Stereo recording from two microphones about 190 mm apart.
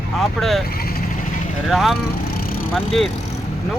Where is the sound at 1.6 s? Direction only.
Centre (ahead or behind).